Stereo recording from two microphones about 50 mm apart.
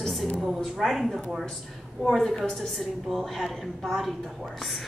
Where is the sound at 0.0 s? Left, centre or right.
Centre.